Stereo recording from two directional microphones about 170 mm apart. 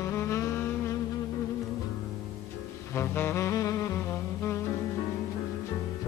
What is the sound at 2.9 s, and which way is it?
Saxophone, 15° left (ahead or behind).